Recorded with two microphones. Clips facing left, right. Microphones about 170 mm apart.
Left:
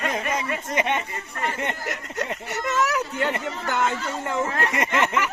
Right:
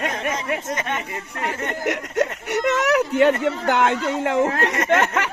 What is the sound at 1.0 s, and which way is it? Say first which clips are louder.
Speech: right 2 dB; 70° right (ahead or behind).